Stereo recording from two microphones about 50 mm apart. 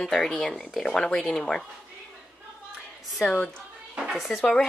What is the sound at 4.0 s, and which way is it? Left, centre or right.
Speech, centre.